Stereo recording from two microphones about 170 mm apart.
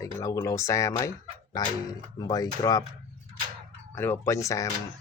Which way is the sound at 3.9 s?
15° left (ahead or behind).